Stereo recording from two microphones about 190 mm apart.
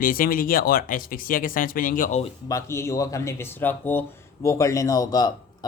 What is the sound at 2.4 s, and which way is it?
Speech, 15° left (ahead or behind).